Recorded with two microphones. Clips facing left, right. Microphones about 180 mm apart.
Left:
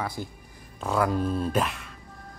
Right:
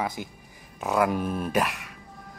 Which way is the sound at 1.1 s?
15° right (ahead or behind).